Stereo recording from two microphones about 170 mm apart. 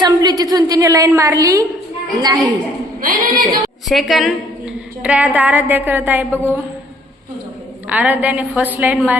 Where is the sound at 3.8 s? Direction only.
Centre (ahead or behind).